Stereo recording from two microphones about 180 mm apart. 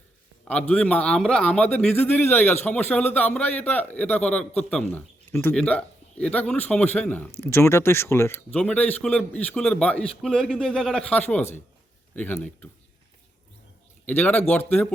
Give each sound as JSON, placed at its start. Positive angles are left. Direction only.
{"t": 0.7, "sound": "speech", "side_deg": 5}
{"t": 14.0, "sound": "speech", "side_deg": 10}